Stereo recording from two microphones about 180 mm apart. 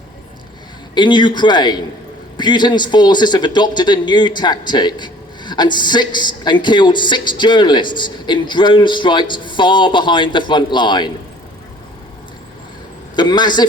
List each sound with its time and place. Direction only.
0.9 s a man's voice: 25° left (ahead or behind)
13.1 s a man's voice: 25° left (ahead or behind)